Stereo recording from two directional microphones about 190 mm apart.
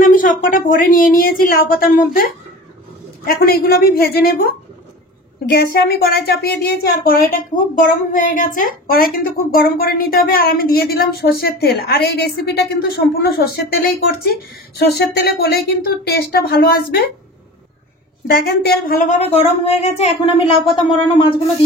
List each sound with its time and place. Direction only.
0.0 s a woman's voice: 45° left (ahead or behind)
3.3 s a woman's voice: 55° left (ahead or behind)
5.5 s a woman's voice: 55° left (ahead or behind)
18.2 s a woman's voice: 55° left (ahead or behind)
19.0 s speech: 30° left (ahead or behind)